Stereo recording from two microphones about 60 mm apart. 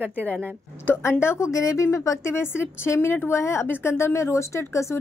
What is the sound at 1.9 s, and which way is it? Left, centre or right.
Speech, left.